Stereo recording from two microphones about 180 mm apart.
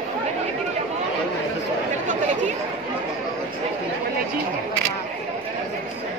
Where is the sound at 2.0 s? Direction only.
40° right (ahead or behind).